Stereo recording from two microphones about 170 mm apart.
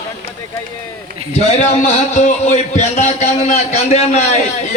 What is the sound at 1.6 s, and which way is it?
A man's voice, 45° left (ahead or behind).